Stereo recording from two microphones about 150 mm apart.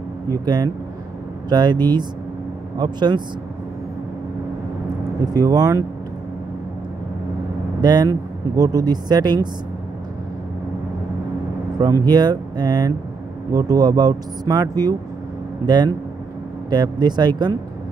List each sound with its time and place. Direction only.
0.3 s speech: 25° right (ahead or behind)
5.2 s speech: 25° right (ahead or behind)
7.8 s speech: 25° right (ahead or behind)
11.8 s speech: 25° right (ahead or behind)